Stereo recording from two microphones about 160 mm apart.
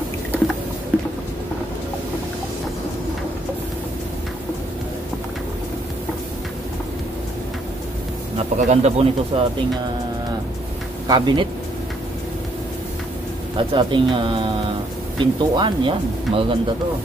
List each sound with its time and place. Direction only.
8.5 s speech: 45° right (ahead or behind)
11.1 s speech: 30° right (ahead or behind)
13.6 s speech: 30° right (ahead or behind)